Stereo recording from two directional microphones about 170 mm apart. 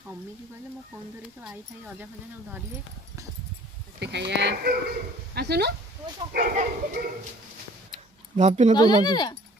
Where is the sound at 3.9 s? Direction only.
85° right; by 6.5 s 65° right (ahead or behind).